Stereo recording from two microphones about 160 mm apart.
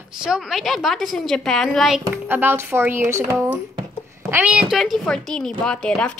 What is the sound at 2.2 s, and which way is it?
A woman's voice, 10° right (ahead or behind).